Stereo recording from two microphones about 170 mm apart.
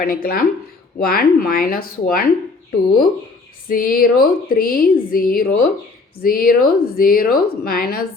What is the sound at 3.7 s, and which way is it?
Speech, 55° left (ahead or behind).